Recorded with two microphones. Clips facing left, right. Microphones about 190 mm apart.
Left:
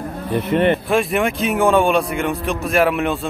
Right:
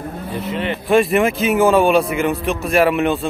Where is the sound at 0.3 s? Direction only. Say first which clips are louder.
Left 7 dB; 55° left (ahead or behind).